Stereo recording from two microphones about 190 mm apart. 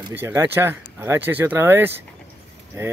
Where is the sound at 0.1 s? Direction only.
10° right (ahead or behind).